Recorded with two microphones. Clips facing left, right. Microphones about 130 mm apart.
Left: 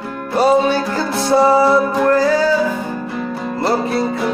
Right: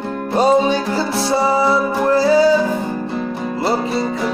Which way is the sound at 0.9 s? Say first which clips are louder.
Left 3 dB; 5° right (ahead or behind).